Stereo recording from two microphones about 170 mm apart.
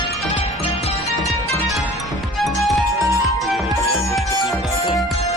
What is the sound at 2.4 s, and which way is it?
Music, centre (ahead or behind).